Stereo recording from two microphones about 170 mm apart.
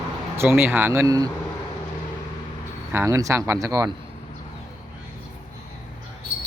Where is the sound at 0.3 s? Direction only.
15° right (ahead or behind).